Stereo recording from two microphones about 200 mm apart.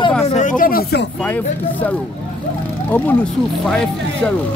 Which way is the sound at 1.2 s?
10° left (ahead or behind).